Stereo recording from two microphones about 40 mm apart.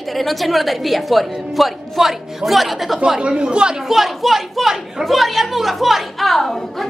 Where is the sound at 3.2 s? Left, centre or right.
Right.